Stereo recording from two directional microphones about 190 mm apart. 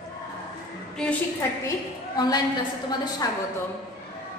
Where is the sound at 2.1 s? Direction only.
20° left (ahead or behind).